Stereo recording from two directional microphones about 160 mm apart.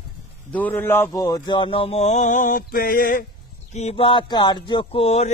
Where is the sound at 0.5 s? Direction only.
10° left (ahead or behind); by 3.3 s 60° left (ahead or behind).